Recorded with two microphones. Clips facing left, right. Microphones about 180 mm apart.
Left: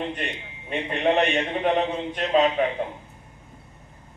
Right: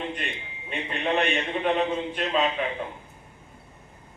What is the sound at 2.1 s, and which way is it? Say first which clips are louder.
Speech: left 8 dB; 40° left (ahead or behind).